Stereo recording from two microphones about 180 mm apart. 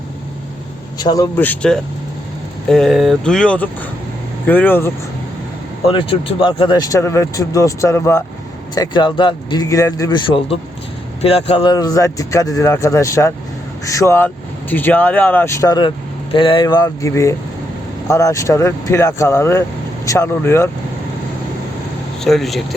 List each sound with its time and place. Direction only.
0.9 s speech: 20° left (ahead or behind)
1.4 s speech: 5° left (ahead or behind)
5.8 s speech: 30° left (ahead or behind)
11.7 s speech: 20° left (ahead or behind)
22.2 s speech: centre (ahead or behind)